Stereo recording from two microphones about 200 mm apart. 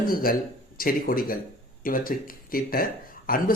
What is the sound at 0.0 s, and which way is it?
Speech, 45° left (ahead or behind).